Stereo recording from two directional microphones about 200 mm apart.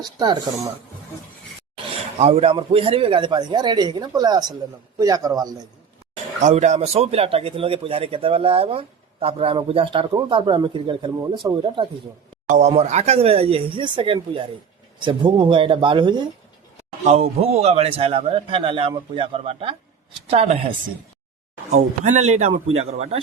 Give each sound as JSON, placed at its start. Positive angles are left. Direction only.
{"t": 0.0, "sound": "a man's voice", "side_deg": -20}
{"t": 2.1, "sound": "a man's voice", "side_deg": -30}
{"t": 6.4, "sound": "a man's voice", "side_deg": -35}
{"t": 12.5, "sound": "a man's voice", "side_deg": -35}
{"t": 21.8, "sound": "a man's voice", "side_deg": -35}